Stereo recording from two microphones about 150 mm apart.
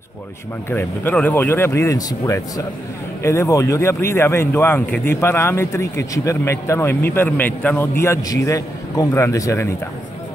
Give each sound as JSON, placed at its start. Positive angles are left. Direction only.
{"t": 0.7, "sound": "speech", "side_deg": 15}